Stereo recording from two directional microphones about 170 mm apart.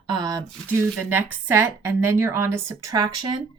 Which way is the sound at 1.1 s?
10° right (ahead or behind).